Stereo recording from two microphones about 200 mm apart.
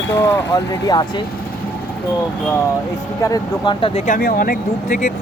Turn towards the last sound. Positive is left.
turn(degrees=40)  # may be behind; listen again after turning